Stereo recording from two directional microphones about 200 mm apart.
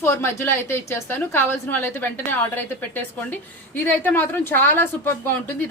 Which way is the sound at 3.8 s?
10° left (ahead or behind).